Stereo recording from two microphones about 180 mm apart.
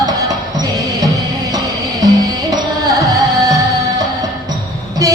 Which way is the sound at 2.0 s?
20° right (ahead or behind).